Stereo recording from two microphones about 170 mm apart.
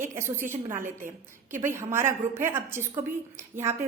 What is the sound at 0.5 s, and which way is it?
A woman's voice, 50° right (ahead or behind).